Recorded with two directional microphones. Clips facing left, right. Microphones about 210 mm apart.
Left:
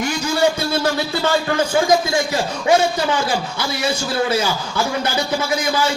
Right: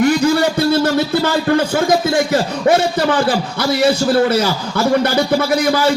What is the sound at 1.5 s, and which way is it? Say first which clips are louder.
Speech: even; 60° right (ahead or behind).